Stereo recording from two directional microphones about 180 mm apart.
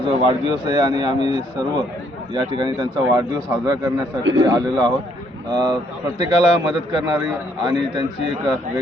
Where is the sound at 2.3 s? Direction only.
25° right (ahead or behind).